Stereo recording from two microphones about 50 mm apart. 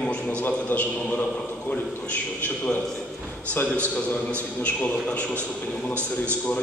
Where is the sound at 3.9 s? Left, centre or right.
Left.